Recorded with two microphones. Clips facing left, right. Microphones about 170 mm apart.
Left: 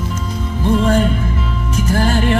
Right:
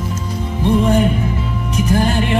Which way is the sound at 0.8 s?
15° right (ahead or behind).